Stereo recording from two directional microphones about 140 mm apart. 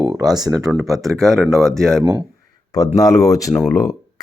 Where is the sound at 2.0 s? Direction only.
25° right (ahead or behind).